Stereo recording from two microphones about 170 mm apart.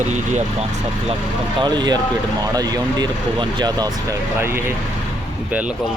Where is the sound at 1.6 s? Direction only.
25° right (ahead or behind).